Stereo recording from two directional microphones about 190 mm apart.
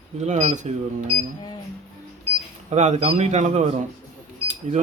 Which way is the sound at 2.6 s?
35° right (ahead or behind).